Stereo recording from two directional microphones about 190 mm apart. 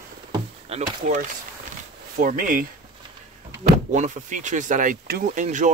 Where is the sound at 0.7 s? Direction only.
35° right (ahead or behind).